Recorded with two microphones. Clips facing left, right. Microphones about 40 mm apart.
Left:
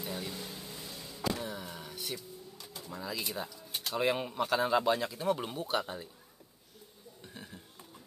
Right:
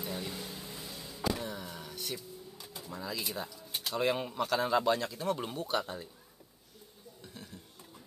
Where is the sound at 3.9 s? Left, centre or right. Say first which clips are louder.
Even; centre.